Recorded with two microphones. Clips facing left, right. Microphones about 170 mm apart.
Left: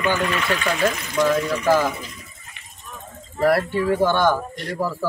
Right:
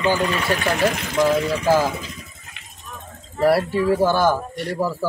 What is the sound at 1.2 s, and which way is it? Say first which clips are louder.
Speech: right 1 dB; 5° right (ahead or behind).